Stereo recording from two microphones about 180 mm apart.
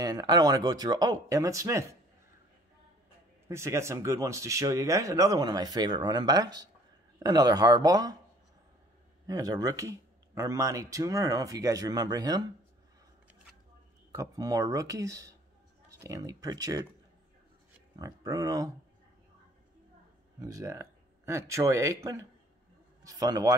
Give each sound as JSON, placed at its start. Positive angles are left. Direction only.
{"t": 0.0, "sound": "speech", "side_deg": -20}
{"t": 3.4, "sound": "speech", "side_deg": -15}
{"t": 9.3, "sound": "speech", "side_deg": -20}
{"t": 14.1, "sound": "speech", "side_deg": -20}
{"t": 17.9, "sound": "speech", "side_deg": -20}
{"t": 20.3, "sound": "speech", "side_deg": -20}